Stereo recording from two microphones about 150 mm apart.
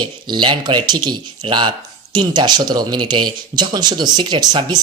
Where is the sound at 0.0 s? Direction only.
30° right (ahead or behind).